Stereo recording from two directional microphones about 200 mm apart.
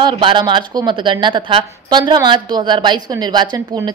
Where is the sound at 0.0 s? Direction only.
25° right (ahead or behind).